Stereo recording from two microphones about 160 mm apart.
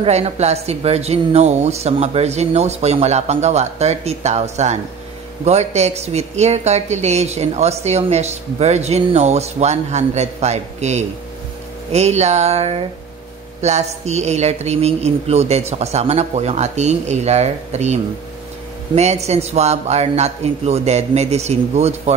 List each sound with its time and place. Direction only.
0.0 s a woman's voice: 40° right (ahead or behind)